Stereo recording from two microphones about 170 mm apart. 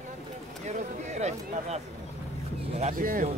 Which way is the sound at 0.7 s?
40° right (ahead or behind).